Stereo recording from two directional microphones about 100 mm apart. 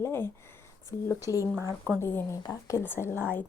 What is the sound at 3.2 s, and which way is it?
Speech, 20° left (ahead or behind).